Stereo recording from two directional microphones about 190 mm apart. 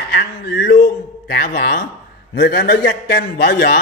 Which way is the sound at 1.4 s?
55° left (ahead or behind).